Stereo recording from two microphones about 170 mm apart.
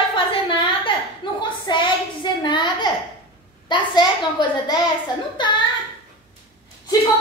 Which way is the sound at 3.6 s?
25° left (ahead or behind).